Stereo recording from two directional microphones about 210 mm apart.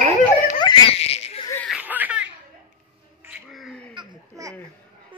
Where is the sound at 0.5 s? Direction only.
25° left (ahead or behind).